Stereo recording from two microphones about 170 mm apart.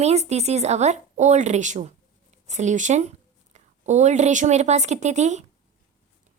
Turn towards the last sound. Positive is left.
turn(degrees=-45)  # may be behind; listen again after turning